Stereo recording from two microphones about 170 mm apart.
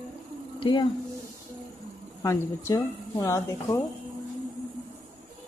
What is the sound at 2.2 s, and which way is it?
Speech, 20° left (ahead or behind).